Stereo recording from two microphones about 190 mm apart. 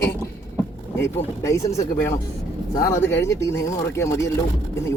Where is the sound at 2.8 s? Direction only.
15° left (ahead or behind).